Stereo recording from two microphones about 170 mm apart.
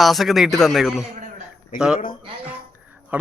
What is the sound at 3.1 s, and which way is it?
Speech, 10° right (ahead or behind).